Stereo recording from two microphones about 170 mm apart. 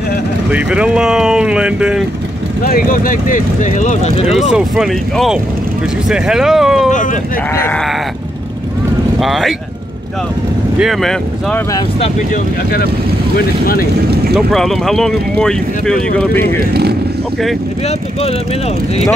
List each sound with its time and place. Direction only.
0.5 s speech: 5° right (ahead or behind)
2.6 s speech: 60° left (ahead or behind)
4.3 s speech: centre (ahead or behind)
9.2 s speech: centre (ahead or behind)
10.8 s speech: centre (ahead or behind)
14.3 s speech: centre (ahead or behind)